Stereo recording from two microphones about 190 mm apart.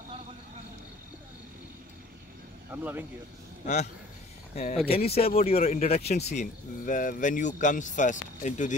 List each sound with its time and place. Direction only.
2.7 s speech: 10° right (ahead or behind)
3.6 s speech: 40° left (ahead or behind)